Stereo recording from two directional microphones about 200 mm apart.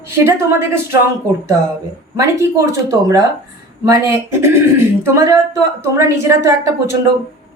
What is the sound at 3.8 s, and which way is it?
A woman's voice, 15° right (ahead or behind).